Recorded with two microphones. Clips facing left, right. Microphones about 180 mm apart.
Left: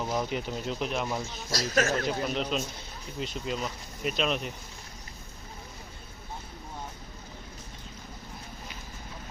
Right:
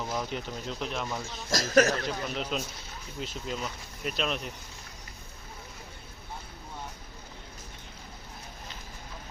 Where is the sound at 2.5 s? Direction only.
5° right (ahead or behind).